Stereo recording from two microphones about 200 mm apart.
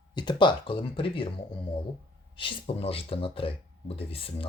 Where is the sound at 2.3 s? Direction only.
25° left (ahead or behind).